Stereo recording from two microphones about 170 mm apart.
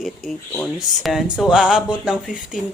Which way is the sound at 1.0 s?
Centre (ahead or behind).